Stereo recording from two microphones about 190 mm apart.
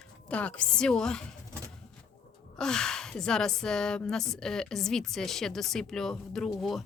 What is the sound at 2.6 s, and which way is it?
Speech, 5° left (ahead or behind).